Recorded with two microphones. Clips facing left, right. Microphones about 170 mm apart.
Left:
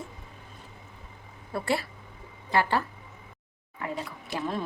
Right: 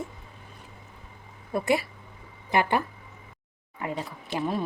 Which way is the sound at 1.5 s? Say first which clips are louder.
Right 4 dB; 15° right (ahead or behind).